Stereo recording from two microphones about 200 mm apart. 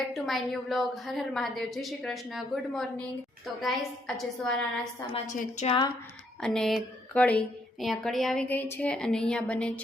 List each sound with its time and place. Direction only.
0.1 s a woman's voice: centre (ahead or behind)
5.1 s a woman's voice: 35° left (ahead or behind)
6.4 s a woman's voice: 5° left (ahead or behind)